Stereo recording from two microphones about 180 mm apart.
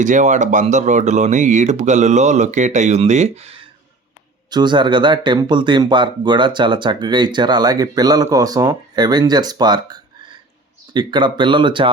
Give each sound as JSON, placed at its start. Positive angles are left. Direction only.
{"t": 0.0, "sound": "speech", "side_deg": -45}